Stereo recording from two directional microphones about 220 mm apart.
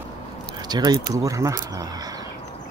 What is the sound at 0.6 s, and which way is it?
Speech, 20° right (ahead or behind).